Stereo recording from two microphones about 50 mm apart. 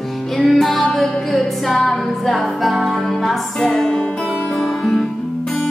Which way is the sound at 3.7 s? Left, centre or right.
Centre.